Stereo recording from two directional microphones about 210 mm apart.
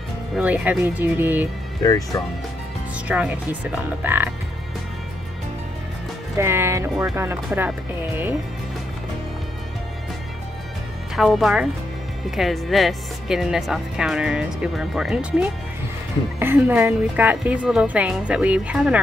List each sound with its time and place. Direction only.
0.4 s speech: 5° right (ahead or behind)
1.8 s speech: 15° left (ahead or behind)
3.1 s a woman's voice: 5° right (ahead or behind)
6.3 s speech: 10° right (ahead or behind)
11.1 s a woman's voice: centre (ahead or behind)